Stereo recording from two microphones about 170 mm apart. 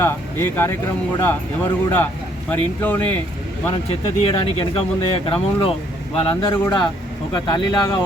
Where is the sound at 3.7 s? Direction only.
30° left (ahead or behind).